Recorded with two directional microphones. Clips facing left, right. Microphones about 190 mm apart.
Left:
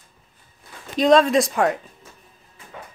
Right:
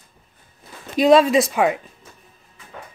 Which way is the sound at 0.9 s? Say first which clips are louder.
Right 2 dB; 5° right (ahead or behind).